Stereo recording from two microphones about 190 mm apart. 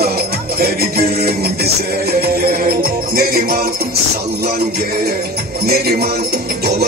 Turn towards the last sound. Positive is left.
turn(degrees=-55)  # may be behind; listen again after turning